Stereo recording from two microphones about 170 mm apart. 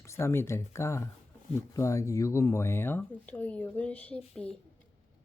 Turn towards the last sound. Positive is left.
turn(degrees=5)  # may be behind; listen again after turning